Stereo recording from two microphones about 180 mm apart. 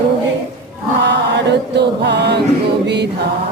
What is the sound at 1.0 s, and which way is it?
Chant, 75° right (ahead or behind).